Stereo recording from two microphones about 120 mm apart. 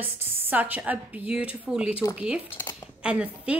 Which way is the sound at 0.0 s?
15° right (ahead or behind).